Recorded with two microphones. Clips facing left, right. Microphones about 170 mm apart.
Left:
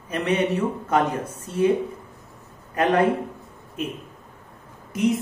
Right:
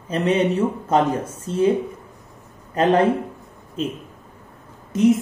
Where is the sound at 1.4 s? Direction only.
30° right (ahead or behind).